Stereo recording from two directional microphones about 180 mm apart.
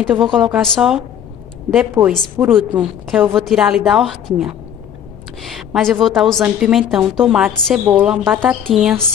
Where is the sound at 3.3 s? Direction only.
Centre (ahead or behind).